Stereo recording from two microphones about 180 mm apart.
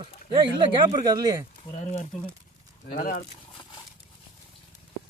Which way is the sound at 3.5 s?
25° left (ahead or behind).